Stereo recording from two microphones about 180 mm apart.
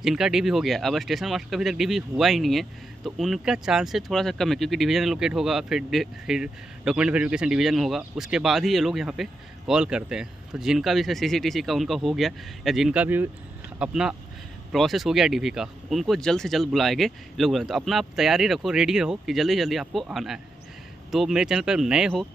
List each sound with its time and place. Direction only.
0.0 s speech: centre (ahead or behind)